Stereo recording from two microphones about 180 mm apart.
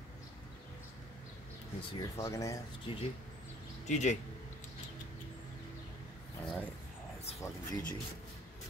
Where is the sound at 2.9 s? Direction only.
30° left (ahead or behind).